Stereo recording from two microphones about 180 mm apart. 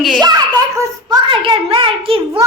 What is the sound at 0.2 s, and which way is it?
A woman's voice, 20° right (ahead or behind).